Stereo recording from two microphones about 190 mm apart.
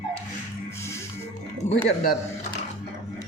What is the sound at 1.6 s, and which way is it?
Speech, 10° left (ahead or behind).